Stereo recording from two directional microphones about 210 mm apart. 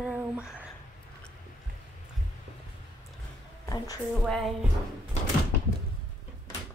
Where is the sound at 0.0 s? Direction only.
5° right (ahead or behind).